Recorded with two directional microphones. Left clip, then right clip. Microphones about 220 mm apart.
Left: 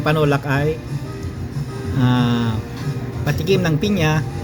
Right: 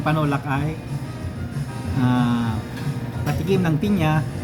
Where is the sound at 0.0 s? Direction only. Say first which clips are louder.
Left 5 dB; 20° left (ahead or behind).